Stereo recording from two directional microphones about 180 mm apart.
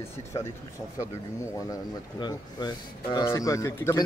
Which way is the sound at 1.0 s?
15° left (ahead or behind).